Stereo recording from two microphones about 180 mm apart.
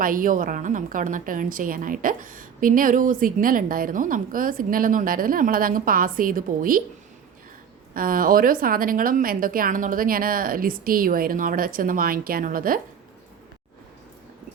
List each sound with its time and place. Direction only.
0.0 s a woman's voice: 50° right (ahead or behind)
7.9 s a woman's voice: 50° right (ahead or behind)